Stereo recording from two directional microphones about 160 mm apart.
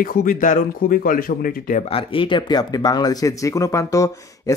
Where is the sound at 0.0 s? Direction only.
60° left (ahead or behind).